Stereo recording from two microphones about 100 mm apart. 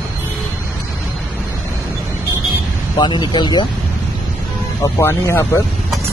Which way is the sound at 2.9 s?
45° left (ahead or behind).